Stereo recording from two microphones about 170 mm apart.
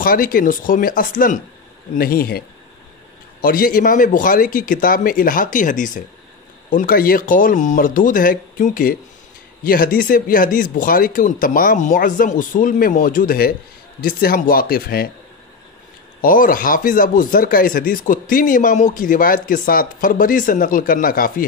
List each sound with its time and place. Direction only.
0.0 s speech: 55° left (ahead or behind)
16.2 s speech: 55° left (ahead or behind)